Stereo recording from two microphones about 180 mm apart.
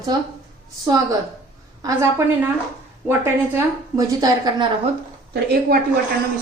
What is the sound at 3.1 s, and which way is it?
A woman's voice, 15° right (ahead or behind).